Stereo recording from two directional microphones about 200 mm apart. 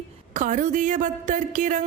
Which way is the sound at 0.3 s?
40° right (ahead or behind).